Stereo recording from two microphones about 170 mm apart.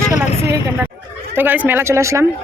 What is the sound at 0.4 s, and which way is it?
Vehicle, 15° right (ahead or behind).